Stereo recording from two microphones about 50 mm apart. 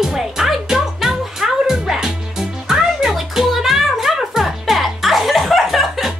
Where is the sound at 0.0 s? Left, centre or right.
Centre.